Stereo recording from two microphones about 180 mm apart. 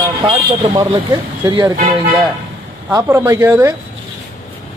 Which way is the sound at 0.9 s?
25° right (ahead or behind).